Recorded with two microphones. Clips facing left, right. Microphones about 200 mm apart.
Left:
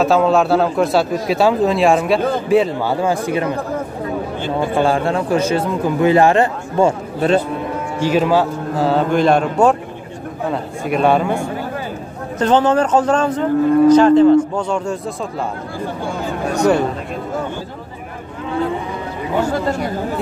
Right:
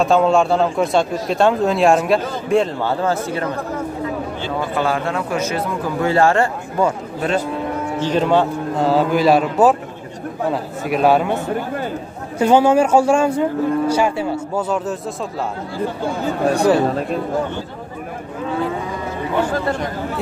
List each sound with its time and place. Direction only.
0.0 s a man's voice: centre (ahead or behind)
4.6 s speech: 30° left (ahead or behind)
5.9 s speech: 20° left (ahead or behind)
8.0 s speech: 5° left (ahead or behind)
12.4 s speech: 10° right (ahead or behind)
19.4 s a man's voice: 10° left (ahead or behind)